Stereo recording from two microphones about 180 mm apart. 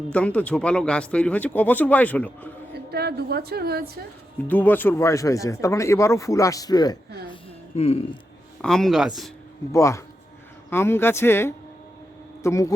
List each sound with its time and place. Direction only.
0.1 s speech: 10° left (ahead or behind)
2.9 s a woman's voice: 60° right (ahead or behind)
4.4 s speech: 10° left (ahead or behind)
7.8 s speech: 35° left (ahead or behind)
8.6 s speech: 5° left (ahead or behind)
9.7 s speech: 15° left (ahead or behind)